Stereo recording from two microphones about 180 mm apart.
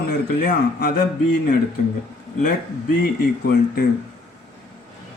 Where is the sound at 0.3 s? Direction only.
55° left (ahead or behind).